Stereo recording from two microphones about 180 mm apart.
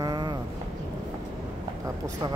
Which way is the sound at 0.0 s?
25° right (ahead or behind).